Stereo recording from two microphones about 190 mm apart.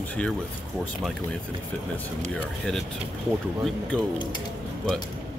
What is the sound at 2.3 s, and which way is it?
Speech, 5° left (ahead or behind).